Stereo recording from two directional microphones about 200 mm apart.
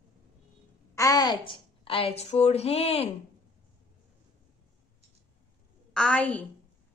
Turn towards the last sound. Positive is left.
turn(degrees=5)  # may be behind; listen again after turning